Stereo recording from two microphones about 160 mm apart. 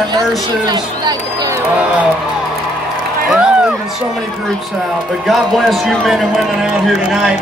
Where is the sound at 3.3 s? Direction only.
5° right (ahead or behind).